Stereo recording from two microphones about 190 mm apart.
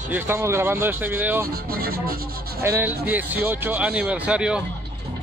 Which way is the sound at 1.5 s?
50° right (ahead or behind).